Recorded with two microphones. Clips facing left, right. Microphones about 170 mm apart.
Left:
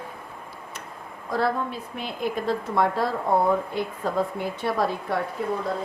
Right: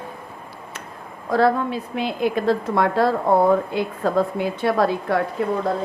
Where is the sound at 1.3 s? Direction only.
90° right.